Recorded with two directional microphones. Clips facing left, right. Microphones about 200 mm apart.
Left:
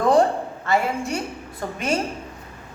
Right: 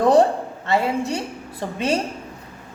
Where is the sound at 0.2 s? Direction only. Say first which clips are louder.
Right 2 dB; 25° right (ahead or behind).